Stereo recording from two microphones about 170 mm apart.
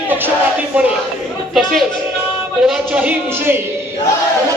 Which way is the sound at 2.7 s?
10° right (ahead or behind).